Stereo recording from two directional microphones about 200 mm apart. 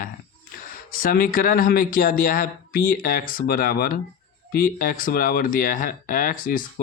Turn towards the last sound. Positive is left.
turn(degrees=45)  # may be behind; listen again after turning